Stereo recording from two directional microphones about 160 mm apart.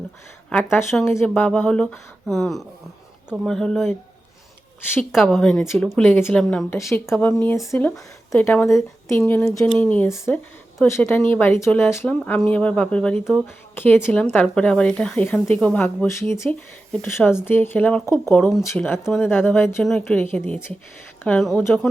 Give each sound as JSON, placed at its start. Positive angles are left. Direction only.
{"t": 0.5, "sound": "speech", "side_deg": 15}
{"t": 5.1, "sound": "speech", "side_deg": 0}
{"t": 13.7, "sound": "speech", "side_deg": 10}
{"t": 19.8, "sound": "speech", "side_deg": 5}
{"t": 20.5, "sound": "speech", "side_deg": 15}